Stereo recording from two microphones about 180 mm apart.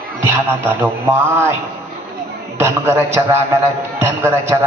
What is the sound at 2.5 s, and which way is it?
A man's voice, 15° right (ahead or behind).